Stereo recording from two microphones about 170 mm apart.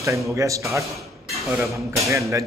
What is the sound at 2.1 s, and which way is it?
Speech, 15° right (ahead or behind).